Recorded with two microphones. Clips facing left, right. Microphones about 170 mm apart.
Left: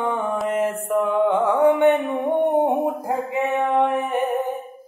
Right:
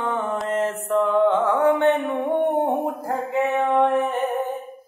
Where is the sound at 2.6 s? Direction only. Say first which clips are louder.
Left 2 dB; 15° left (ahead or behind).